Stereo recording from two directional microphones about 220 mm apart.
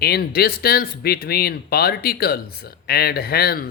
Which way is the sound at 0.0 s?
45° left (ahead or behind).